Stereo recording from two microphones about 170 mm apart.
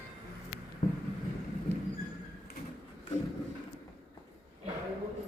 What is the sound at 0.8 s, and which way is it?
Vehicle, 40° left (ahead or behind).